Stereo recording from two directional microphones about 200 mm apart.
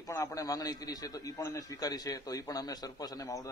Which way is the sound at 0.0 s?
15° left (ahead or behind).